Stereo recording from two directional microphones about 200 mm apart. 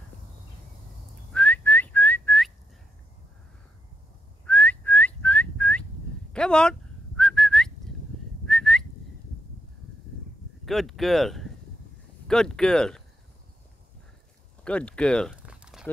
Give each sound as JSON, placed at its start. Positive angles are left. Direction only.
{"t": 1.3, "sound": "whistling", "side_deg": 5}
{"t": 4.5, "sound": "whistling", "side_deg": 5}
{"t": 10.6, "sound": "speech", "side_deg": 0}
{"t": 14.6, "sound": "a sound", "side_deg": 5}